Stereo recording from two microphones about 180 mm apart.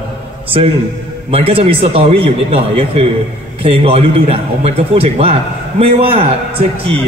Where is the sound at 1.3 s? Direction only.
30° right (ahead or behind).